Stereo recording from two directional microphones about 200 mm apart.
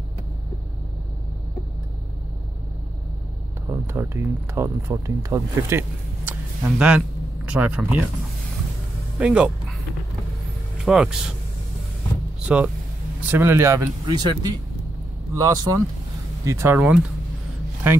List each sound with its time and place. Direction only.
3.6 s speech: 15° right (ahead or behind)
9.2 s speech: 5° right (ahead or behind)
10.8 s speech: centre (ahead or behind)
12.4 s speech: 5° right (ahead or behind)